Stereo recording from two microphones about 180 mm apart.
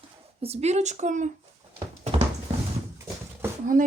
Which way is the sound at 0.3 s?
35° right (ahead or behind).